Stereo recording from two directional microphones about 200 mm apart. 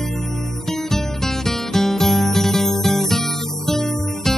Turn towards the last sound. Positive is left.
turn(degrees=0)  # may be behind; listen again after turning